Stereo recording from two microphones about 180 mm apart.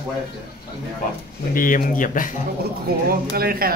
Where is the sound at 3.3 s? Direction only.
55° right (ahead or behind).